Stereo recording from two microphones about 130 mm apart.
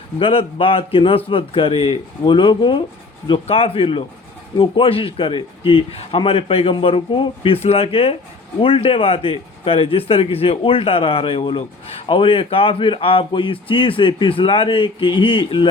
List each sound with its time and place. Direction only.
0.2 s speech: 45° left (ahead or behind)